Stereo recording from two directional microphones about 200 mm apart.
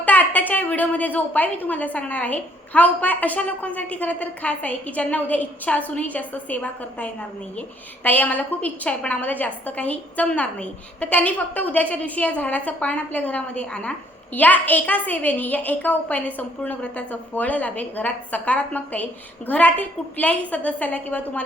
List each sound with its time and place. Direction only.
0.0 s a woman's voice: 10° left (ahead or behind)